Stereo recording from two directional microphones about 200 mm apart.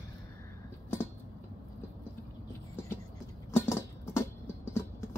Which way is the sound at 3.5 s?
10° left (ahead or behind).